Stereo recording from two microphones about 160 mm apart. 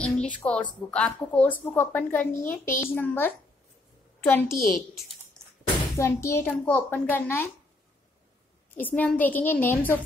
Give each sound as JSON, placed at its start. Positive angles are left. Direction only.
{"t": 0.0, "sound": "a sound", "side_deg": 5}
{"t": 0.5, "sound": "a woman's voice", "side_deg": 10}
{"t": 8.7, "sound": "a woman's voice", "side_deg": 10}